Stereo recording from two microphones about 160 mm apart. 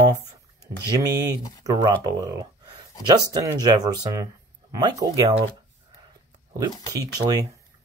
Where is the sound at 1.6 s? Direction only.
20° right (ahead or behind).